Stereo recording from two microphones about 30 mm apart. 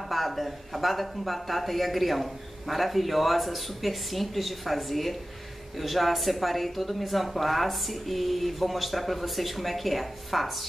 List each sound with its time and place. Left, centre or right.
0.1 s speech: centre